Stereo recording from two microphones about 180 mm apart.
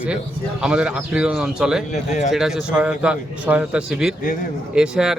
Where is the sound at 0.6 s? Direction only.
5° right (ahead or behind).